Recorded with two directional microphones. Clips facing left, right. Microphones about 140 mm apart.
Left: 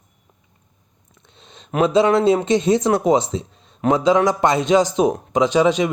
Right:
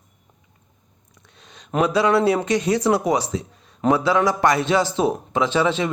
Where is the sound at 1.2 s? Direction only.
25° left (ahead or behind).